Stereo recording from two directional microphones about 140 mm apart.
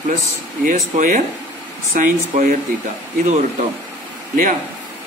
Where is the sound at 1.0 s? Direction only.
70° right (ahead or behind).